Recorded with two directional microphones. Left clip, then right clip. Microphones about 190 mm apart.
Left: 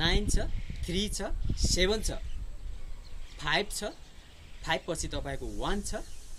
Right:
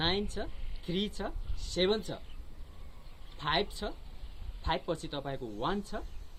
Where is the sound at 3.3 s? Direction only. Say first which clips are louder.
Left 2 dB; 15° left (ahead or behind).